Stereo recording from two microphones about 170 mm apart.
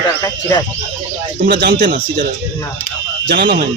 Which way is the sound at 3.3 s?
85° right.